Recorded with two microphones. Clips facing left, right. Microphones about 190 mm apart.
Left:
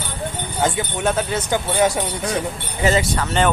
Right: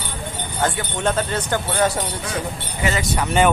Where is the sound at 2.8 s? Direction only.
35° left (ahead or behind).